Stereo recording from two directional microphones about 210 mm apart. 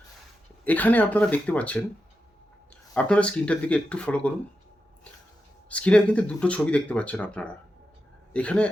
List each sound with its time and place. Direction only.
0.6 s speech: 10° left (ahead or behind)
2.9 s speech: 5° left (ahead or behind)
5.6 s speech: 5° left (ahead or behind)